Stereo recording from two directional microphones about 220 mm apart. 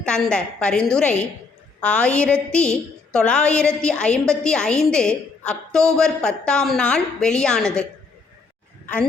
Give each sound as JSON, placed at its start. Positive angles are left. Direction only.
{"t": 0.0, "sound": "a woman's voice", "side_deg": 5}